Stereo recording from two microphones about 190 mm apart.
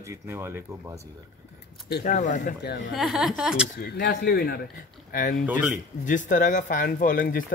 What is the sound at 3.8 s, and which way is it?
Speech, 55° left (ahead or behind).